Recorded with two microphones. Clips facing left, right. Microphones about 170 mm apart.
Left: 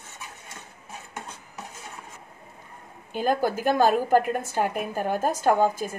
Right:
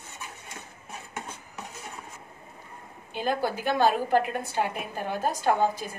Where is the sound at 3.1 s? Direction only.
45° left (ahead or behind).